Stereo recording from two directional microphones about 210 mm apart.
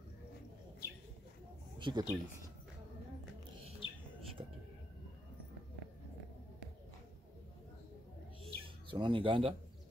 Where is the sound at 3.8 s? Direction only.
25° left (ahead or behind).